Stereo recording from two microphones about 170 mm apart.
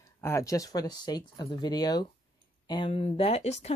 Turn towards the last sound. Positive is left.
turn(degrees=40)  # may be behind; listen again after turning